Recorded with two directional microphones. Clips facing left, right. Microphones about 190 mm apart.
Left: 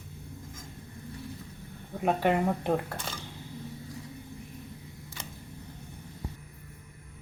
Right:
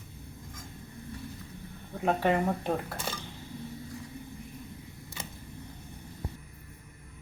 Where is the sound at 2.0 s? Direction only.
15° left (ahead or behind).